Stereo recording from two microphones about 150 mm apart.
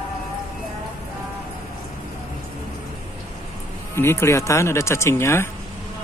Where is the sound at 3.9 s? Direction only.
15° left (ahead or behind).